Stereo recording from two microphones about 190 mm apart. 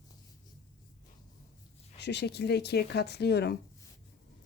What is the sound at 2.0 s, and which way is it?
Speech, 65° left (ahead or behind).